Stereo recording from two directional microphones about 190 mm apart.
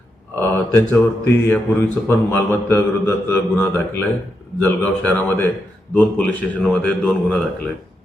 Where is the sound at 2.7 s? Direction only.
10° left (ahead or behind).